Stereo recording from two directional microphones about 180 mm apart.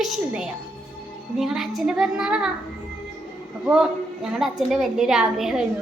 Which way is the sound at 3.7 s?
5° right (ahead or behind).